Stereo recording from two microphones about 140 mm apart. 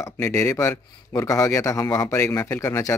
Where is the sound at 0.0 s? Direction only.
20° left (ahead or behind).